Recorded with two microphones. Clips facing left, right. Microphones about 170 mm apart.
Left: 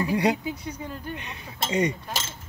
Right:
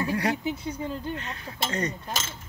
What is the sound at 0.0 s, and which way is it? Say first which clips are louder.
Speech: left 3 dB; 15° left (ahead or behind).